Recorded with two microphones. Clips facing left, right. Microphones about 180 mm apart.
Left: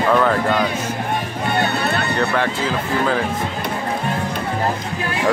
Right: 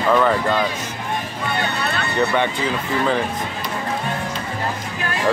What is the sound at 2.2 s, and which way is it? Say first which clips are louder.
Speech: right 4 dB; centre (ahead or behind).